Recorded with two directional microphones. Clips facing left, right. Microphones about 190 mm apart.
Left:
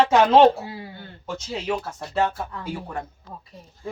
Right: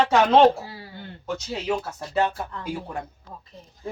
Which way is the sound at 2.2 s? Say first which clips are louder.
Even; 10° right (ahead or behind).